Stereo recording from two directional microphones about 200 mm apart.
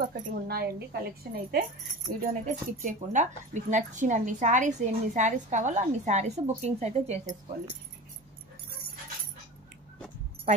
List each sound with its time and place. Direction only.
0.0 s a woman's voice: 50° right (ahead or behind)
2.0 s speech: 40° right (ahead or behind)